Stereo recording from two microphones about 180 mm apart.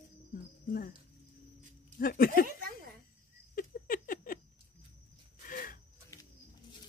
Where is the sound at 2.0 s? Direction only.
55° left (ahead or behind).